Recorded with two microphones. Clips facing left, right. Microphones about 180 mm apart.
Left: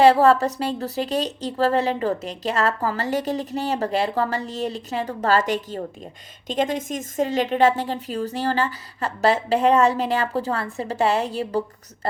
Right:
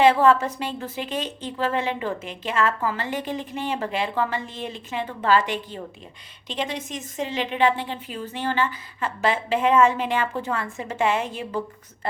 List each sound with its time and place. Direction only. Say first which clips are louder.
0.0 s a woman's voice: left 2 dB; 40° left (ahead or behind)